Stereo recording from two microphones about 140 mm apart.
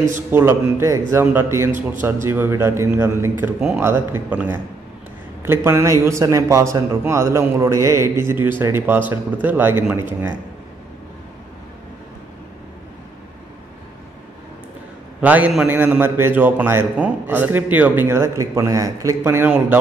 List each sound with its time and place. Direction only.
0.3 s a man's voice: 20° right (ahead or behind)
15.1 s a man's voice: 10° right (ahead or behind)